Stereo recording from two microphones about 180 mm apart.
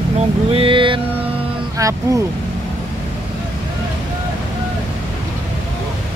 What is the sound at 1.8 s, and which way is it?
Music, 20° right (ahead or behind).